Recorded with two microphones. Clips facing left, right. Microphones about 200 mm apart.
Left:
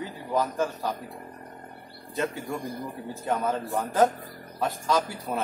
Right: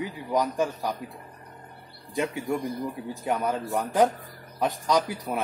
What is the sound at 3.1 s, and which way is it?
A man's voice, 15° right (ahead or behind).